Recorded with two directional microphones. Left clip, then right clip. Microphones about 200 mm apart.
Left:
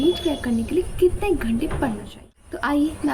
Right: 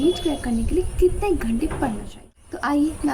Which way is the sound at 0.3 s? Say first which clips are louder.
Left 1 dB; centre (ahead or behind).